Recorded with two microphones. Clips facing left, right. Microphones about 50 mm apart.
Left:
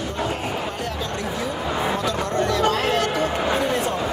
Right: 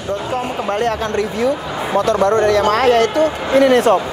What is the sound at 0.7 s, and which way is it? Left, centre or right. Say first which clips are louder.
A man's voice: right 10 dB; right.